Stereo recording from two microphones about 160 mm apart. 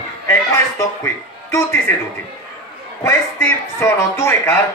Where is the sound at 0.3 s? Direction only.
15° left (ahead or behind).